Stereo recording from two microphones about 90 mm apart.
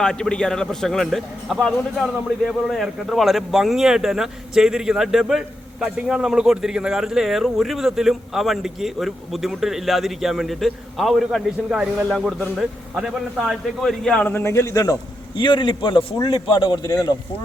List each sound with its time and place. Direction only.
0.0 s a man's voice: 10° left (ahead or behind)
14.1 s speech: 15° left (ahead or behind)
14.3 s speech: 30° left (ahead or behind)
15.4 s a man's voice: 60° left (ahead or behind)
16.2 s a man's voice: 80° left
16.8 s speech: 40° left (ahead or behind)